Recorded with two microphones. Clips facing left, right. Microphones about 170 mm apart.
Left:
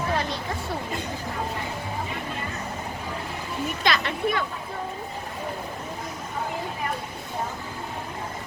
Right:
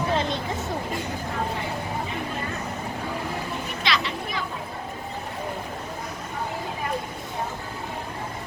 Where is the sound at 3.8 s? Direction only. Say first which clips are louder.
Left 3 dB; 50° left (ahead or behind).